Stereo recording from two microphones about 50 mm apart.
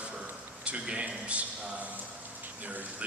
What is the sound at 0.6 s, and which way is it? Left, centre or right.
Speech, right.